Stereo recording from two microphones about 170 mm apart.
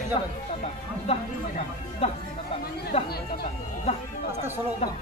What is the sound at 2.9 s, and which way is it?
Chatter, 35° left (ahead or behind).